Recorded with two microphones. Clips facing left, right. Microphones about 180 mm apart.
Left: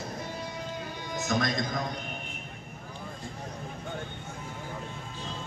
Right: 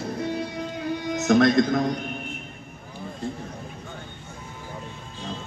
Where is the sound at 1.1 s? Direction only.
65° right (ahead or behind).